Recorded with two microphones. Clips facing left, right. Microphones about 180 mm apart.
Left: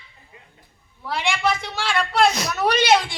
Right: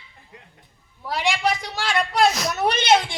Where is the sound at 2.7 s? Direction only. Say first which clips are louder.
Left 2 dB; 50° right (ahead or behind).